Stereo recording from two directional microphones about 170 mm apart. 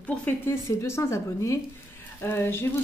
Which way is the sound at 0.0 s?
10° left (ahead or behind).